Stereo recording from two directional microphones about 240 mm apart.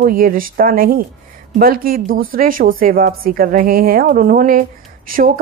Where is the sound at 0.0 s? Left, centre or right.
Right.